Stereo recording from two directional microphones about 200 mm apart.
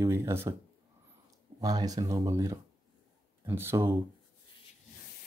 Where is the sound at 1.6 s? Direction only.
20° right (ahead or behind).